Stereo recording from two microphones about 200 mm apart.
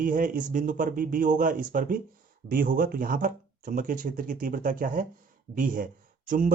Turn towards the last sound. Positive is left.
turn(degrees=-40)  # may be behind; listen again after turning